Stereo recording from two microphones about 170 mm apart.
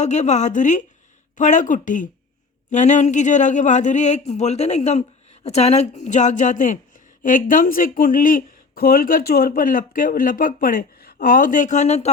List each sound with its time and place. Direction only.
0.0 s speech: 45° left (ahead or behind)